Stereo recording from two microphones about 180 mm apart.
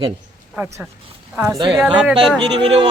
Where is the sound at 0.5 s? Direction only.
15° right (ahead or behind).